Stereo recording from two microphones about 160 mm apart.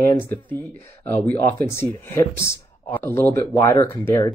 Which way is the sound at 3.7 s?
30° left (ahead or behind).